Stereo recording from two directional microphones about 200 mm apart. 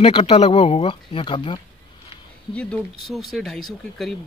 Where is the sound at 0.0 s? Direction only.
30° left (ahead or behind).